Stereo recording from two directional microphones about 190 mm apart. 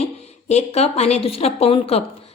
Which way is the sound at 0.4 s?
35° left (ahead or behind).